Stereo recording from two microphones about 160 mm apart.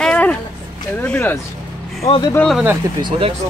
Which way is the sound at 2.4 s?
Centre (ahead or behind).